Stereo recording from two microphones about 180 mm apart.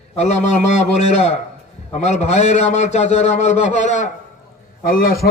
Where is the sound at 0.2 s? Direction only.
40° left (ahead or behind).